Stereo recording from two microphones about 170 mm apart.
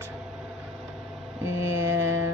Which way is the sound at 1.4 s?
15° right (ahead or behind).